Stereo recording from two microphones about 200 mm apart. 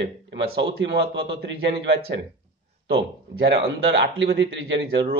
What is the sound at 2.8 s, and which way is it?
A man's voice, 60° right (ahead or behind).